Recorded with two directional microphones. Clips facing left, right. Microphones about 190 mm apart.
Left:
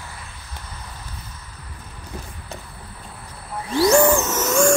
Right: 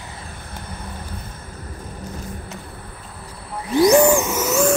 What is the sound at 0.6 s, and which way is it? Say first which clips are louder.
Vehicle: right 5 dB; 55° right (ahead or behind).